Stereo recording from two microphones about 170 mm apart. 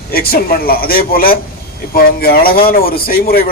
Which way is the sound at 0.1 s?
65° left (ahead or behind).